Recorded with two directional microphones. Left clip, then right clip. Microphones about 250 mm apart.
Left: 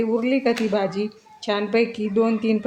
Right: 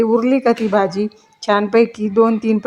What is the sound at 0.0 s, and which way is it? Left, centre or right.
Speech, right.